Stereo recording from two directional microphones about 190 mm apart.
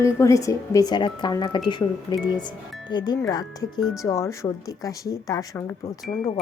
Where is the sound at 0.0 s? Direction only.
15° left (ahead or behind).